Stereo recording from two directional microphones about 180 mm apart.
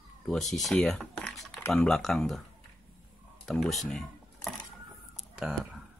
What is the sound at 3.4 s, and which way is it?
Speech, centre (ahead or behind).